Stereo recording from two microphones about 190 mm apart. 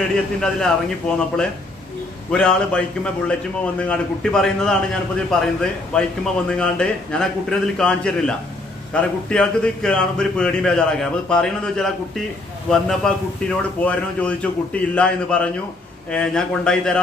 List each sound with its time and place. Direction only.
0.1 s speech: 5° left (ahead or behind)